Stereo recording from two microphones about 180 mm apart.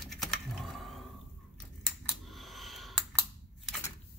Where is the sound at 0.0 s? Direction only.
Centre (ahead or behind).